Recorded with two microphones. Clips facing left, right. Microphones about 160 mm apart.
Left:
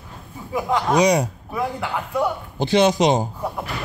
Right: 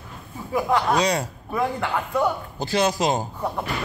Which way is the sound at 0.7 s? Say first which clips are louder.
Left 4 dB; 20° left (ahead or behind).